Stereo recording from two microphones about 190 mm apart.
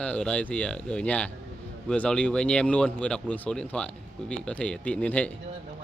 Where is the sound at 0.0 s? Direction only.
5° left (ahead or behind).